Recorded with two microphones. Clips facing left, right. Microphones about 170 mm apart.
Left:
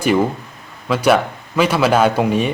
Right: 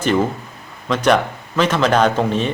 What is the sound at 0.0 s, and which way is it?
Speech, 10° left (ahead or behind).